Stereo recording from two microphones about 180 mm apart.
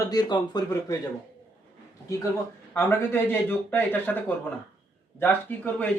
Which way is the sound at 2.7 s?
10° left (ahead or behind).